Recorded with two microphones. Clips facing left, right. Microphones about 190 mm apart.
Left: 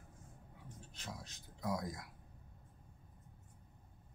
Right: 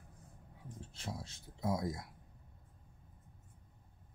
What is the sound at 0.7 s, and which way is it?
Speech, 30° right (ahead or behind).